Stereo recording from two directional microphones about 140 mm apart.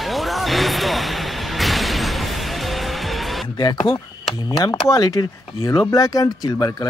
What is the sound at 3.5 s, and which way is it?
Speech, 30° left (ahead or behind).